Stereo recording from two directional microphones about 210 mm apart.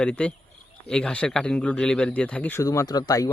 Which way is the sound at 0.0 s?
5° left (ahead or behind).